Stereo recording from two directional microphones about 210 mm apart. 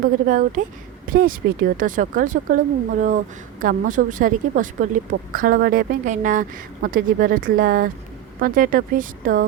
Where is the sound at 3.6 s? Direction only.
40° right (ahead or behind).